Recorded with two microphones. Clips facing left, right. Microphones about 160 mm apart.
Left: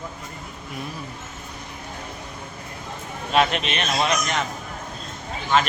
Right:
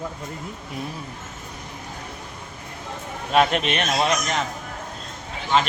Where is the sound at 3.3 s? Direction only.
45° right (ahead or behind).